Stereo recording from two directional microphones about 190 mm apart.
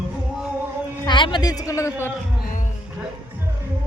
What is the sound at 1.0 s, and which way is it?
A man's voice, 25° left (ahead or behind).